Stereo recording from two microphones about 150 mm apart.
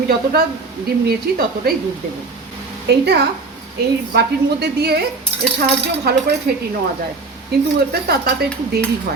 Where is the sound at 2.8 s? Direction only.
90° right.